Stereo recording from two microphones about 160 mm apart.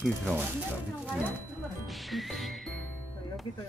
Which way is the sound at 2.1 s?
Centre (ahead or behind).